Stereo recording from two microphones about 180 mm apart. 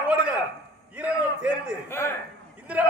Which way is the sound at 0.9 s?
5° right (ahead or behind).